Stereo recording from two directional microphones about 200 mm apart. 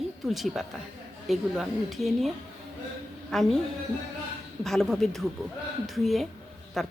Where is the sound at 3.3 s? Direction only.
Centre (ahead or behind).